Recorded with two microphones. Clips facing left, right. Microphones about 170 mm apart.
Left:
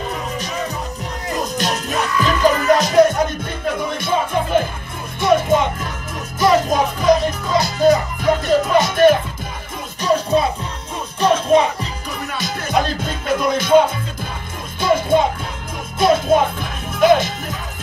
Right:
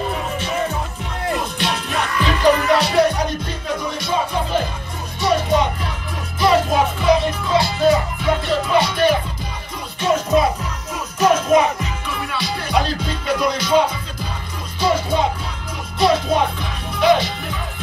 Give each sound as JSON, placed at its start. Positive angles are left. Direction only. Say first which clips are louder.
{"t": 0.4, "sound": "music", "louder": "right 2 dB", "side_deg": 40}
{"t": 6.7, "sound": "music", "louder": "left 1 dB", "side_deg": 45}
{"t": 9.9, "sound": "music", "louder": "even", "side_deg": 35}
{"t": 11.5, "sound": "music", "louder": "left 1 dB", "side_deg": 35}